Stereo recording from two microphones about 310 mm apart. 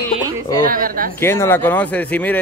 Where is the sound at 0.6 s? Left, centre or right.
Right.